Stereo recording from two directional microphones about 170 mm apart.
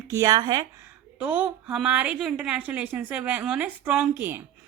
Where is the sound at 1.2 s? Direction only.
10° right (ahead or behind).